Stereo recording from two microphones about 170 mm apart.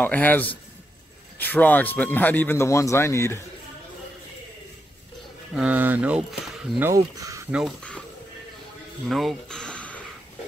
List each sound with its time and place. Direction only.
0.0 s speech: 10° left (ahead or behind)
5.6 s speech: 10° right (ahead or behind)
6.8 s speech: 20° right (ahead or behind)
9.1 s a sound: centre (ahead or behind)